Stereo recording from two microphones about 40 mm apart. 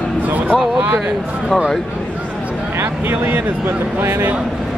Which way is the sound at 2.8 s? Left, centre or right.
Right.